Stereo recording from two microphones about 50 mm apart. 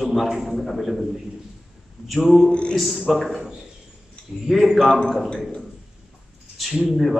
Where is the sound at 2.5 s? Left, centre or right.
Left.